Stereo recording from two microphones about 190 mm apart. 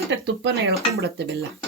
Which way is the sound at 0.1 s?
65° right (ahead or behind).